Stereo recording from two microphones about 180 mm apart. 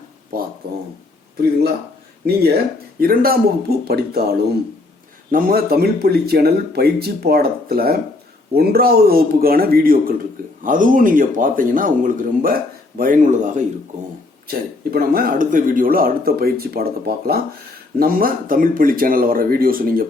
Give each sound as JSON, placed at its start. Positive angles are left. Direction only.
{"t": 2.2, "sound": "speech", "side_deg": -60}
{"t": 14.4, "sound": "speech", "side_deg": -55}